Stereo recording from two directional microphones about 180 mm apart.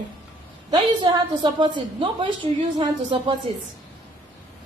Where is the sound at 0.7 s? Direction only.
25° right (ahead or behind).